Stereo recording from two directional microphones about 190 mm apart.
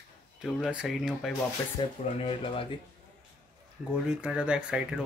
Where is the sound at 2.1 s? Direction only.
30° left (ahead or behind).